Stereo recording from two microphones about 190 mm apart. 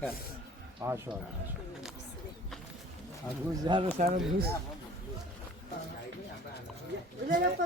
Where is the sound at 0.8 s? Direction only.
15° right (ahead or behind).